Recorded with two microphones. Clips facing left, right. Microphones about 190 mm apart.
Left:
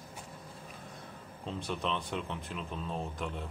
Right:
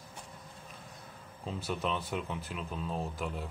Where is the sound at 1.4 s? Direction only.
5° right (ahead or behind).